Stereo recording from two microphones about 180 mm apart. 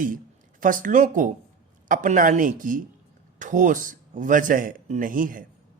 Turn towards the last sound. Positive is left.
turn(degrees=-50)  # may be behind; listen again after turning